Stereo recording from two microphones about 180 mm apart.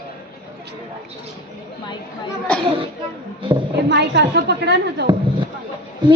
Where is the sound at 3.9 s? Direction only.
70° right (ahead or behind).